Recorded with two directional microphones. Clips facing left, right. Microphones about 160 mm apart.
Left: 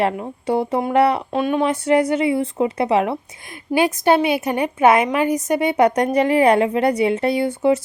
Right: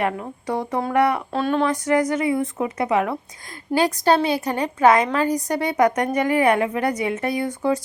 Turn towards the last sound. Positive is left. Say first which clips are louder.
# left 5 dB
turn(degrees=25)  # may be behind; listen again after turning